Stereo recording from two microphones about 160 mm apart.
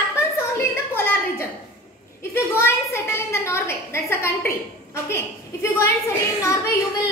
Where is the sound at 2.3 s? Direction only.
15° left (ahead or behind).